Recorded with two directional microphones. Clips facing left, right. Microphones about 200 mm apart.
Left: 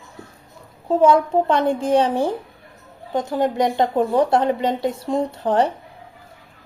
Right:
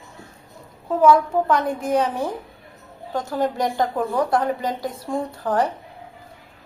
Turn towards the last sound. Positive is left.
turn(degrees=25)  # may be behind; listen again after turning